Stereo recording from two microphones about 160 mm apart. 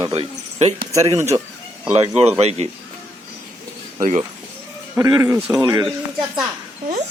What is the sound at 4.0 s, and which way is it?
Speech, 45° right (ahead or behind).